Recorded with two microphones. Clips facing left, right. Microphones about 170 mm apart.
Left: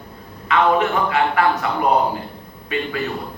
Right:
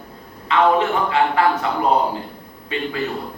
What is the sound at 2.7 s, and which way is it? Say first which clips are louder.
Speech: left 1 dB; 25° right (ahead or behind).